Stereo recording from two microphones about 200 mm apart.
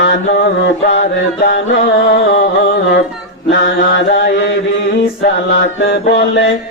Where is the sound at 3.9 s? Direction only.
65° left (ahead or behind).